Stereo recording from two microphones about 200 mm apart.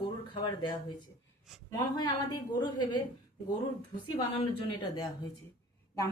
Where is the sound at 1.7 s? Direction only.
20° left (ahead or behind).